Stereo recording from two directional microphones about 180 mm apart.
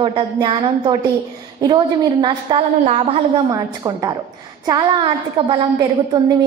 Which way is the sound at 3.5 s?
20° right (ahead or behind).